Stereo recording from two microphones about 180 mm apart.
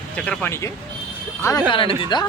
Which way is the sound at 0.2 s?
10° left (ahead or behind).